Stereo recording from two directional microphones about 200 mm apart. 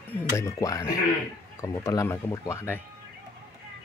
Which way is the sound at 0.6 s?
15° left (ahead or behind).